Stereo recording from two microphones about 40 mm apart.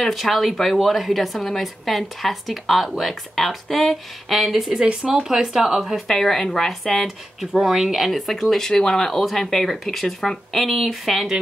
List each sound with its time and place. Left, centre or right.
0.1 s speech: centre
4.4 s speech: centre
6.0 s speech: centre
8.0 s speech: centre